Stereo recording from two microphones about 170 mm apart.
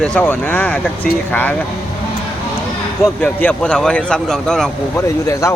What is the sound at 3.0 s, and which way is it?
Speech, 10° left (ahead or behind).